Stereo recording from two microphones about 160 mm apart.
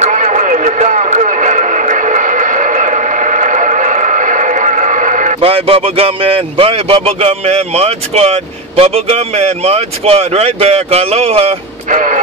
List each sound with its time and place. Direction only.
0.0 s music: 45° right (ahead or behind)
5.4 s speech: 35° right (ahead or behind)